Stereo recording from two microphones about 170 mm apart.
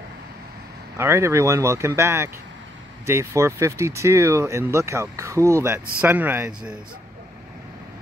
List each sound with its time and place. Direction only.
0.9 s speech: 15° right (ahead or behind)